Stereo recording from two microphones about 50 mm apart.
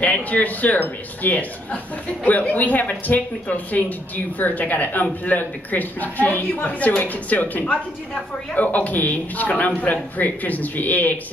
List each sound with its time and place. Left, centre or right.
0.0 s a woman's voice: left